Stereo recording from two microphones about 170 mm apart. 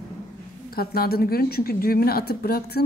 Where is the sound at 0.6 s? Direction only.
65° left (ahead or behind).